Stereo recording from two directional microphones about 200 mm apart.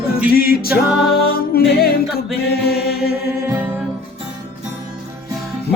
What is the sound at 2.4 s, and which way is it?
Mantra, 50° left (ahead or behind).